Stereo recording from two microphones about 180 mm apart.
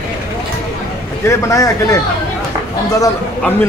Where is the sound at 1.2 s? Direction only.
15° left (ahead or behind).